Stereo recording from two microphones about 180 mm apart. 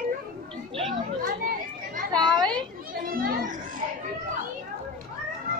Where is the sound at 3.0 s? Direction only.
55° right (ahead or behind).